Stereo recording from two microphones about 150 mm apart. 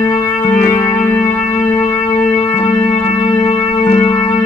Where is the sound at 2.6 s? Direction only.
45° left (ahead or behind).